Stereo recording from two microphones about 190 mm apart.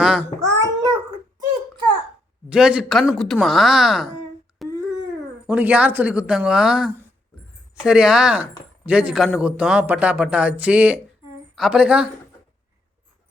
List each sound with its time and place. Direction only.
0.0 s babbling: 5° right (ahead or behind)
0.3 s babbling: 20° right (ahead or behind)
2.5 s a man's voice: 5° right (ahead or behind)
4.6 s a sound: centre (ahead or behind)
5.5 s a man's voice: 5° right (ahead or behind)